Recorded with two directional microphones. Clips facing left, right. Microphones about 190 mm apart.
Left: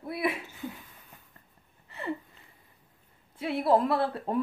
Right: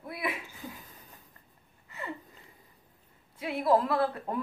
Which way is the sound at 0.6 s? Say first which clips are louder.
Left 4 dB; 40° right (ahead or behind).